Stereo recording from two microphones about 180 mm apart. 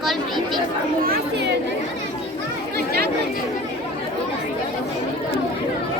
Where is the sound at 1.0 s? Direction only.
55° right (ahead or behind).